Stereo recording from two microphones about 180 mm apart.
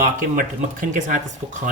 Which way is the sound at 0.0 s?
50° right (ahead or behind).